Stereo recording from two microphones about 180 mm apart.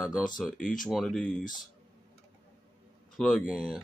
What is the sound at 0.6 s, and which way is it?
Speech, 50° left (ahead or behind).